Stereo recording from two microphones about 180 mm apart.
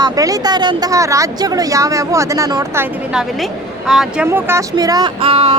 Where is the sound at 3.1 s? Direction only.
Centre (ahead or behind).